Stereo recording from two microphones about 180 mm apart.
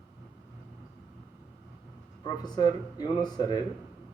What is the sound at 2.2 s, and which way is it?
Speech, 25° left (ahead or behind).